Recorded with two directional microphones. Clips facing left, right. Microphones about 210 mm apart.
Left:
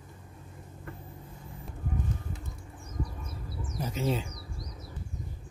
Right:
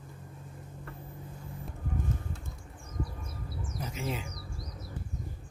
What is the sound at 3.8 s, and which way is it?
Bird, 30° left (ahead or behind).